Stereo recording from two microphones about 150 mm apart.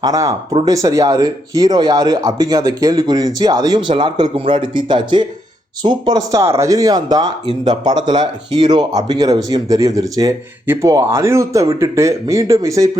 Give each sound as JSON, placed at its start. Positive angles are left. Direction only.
{"t": 0.0, "sound": "speech", "side_deg": -25}